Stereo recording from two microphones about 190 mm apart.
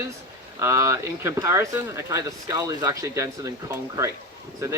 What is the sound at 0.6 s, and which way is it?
Speech, 15° right (ahead or behind).